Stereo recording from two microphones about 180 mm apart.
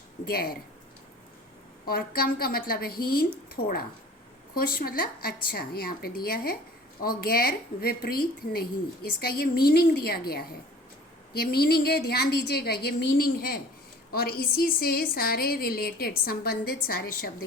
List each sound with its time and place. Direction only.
0.3 s a woman's voice: 55° left (ahead or behind)
1.9 s a woman's voice: 55° left (ahead or behind)